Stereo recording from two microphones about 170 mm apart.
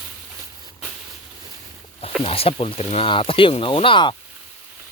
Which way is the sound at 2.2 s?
35° left (ahead or behind).